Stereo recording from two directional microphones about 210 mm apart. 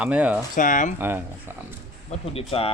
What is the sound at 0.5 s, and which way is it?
Speech, 40° left (ahead or behind).